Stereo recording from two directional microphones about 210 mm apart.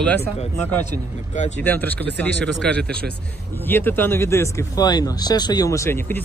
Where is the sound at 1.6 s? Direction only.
10° left (ahead or behind).